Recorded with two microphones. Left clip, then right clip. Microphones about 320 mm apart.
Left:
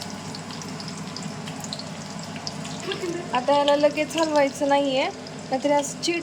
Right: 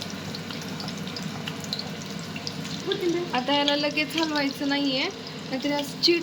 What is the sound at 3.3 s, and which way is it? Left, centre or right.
Speech, centre.